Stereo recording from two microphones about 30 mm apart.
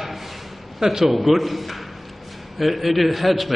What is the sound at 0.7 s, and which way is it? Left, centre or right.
Speech, centre.